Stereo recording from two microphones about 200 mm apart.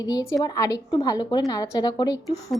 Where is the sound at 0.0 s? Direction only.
20° left (ahead or behind).